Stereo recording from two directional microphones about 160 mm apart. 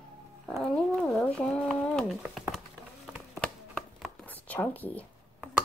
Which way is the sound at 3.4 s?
5° left (ahead or behind).